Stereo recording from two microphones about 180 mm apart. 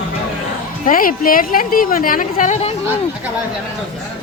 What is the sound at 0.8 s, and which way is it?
A woman's voice, 50° left (ahead or behind).